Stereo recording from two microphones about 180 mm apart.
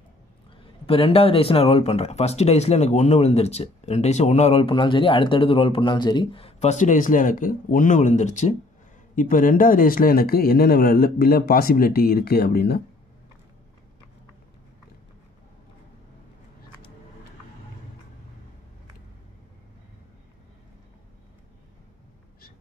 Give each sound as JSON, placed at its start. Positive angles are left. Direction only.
{"t": 0.8, "sound": "speech", "side_deg": 30}